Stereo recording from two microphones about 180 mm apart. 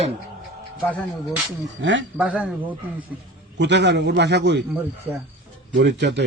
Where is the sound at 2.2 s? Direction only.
5° right (ahead or behind).